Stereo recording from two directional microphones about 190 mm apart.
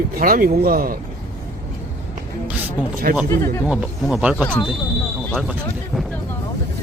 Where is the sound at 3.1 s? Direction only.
45° right (ahead or behind).